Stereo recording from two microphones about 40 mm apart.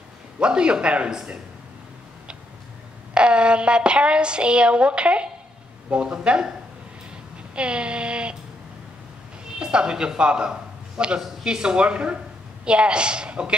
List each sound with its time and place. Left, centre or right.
0.4 s a woman's voice: right
3.2 s a woman's voice: right
7.5 s a woman's voice: right
9.6 s a man's voice: right